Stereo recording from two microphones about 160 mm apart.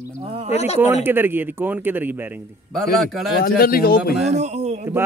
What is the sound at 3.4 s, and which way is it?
Speech, 70° left (ahead or behind).